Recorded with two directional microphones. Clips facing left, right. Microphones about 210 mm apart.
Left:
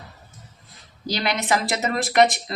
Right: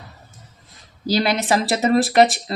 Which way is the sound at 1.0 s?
35° right (ahead or behind).